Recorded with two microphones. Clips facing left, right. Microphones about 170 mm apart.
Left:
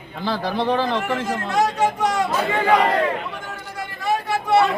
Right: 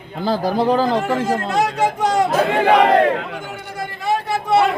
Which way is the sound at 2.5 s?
70° right (ahead or behind).